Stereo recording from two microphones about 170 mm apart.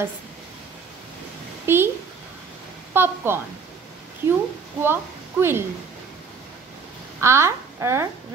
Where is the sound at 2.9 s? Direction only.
15° right (ahead or behind).